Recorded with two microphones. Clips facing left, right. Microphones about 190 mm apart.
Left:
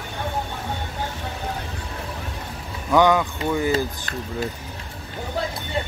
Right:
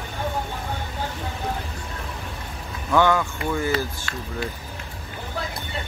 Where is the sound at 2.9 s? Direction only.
15° left (ahead or behind).